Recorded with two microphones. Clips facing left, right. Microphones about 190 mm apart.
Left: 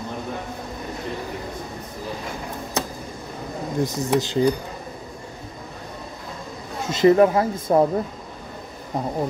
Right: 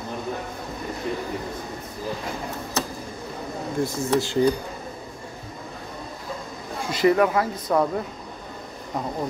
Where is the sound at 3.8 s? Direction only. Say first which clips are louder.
Left 1 dB; 15° left (ahead or behind).